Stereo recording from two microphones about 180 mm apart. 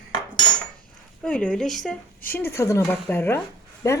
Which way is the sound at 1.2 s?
5° left (ahead or behind).